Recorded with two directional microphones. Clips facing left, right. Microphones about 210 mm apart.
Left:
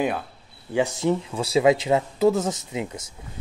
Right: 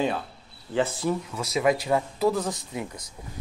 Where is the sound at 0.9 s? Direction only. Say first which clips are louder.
Left 4 dB; 25° left (ahead or behind).